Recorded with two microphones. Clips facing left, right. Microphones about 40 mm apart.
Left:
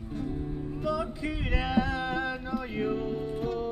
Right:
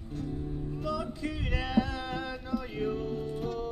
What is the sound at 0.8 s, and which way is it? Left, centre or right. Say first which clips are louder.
Music: left 3 dB; centre.